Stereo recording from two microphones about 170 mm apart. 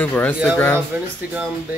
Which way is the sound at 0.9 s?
10° right (ahead or behind).